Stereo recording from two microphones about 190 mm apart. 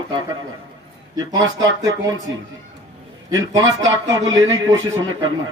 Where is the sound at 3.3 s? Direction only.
20° right (ahead or behind).